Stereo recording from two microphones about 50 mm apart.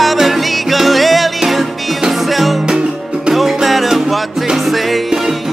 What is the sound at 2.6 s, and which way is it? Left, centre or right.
Music, centre.